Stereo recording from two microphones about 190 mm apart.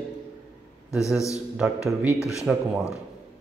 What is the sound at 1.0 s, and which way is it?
A man's voice, 15° left (ahead or behind).